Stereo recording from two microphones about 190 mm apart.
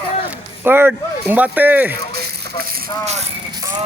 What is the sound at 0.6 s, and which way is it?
A man's voice, 10° right (ahead or behind).